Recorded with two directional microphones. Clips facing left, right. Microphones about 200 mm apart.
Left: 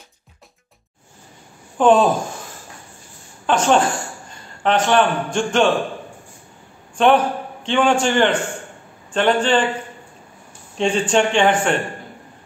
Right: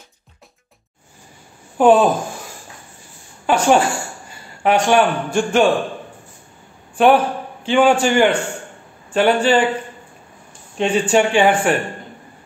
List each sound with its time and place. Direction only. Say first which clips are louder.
1.8 s speech: right 2 dB; 10° right (ahead or behind)
3.4 s a woman's voice: right 2 dB; 10° right (ahead or behind)
7.0 s speech: right 2 dB; 5° right (ahead or behind)
10.8 s speech: right 2 dB; 10° right (ahead or behind)